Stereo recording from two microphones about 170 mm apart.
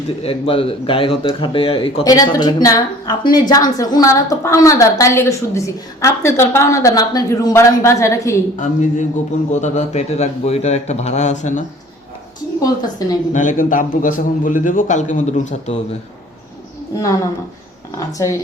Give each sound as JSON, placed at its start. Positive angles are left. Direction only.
{"t": 0.2, "sound": "a man's voice", "side_deg": 35}
{"t": 2.0, "sound": "speech", "side_deg": 20}
{"t": 8.5, "sound": "a man's voice", "side_deg": 45}
{"t": 12.6, "sound": "speech", "side_deg": 20}
{"t": 13.3, "sound": "a man's voice", "side_deg": 50}
{"t": 17.9, "sound": "speech", "side_deg": 20}